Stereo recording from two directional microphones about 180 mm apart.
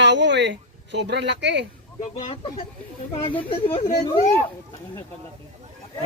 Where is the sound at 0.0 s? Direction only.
75° right (ahead or behind).